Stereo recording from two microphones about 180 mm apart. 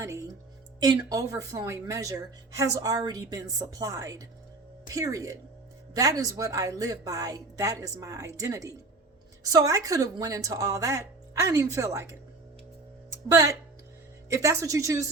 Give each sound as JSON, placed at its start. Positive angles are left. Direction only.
{"t": 0.0, "sound": "a woman's voice", "side_deg": -15}
{"t": 13.1, "sound": "speech", "side_deg": -20}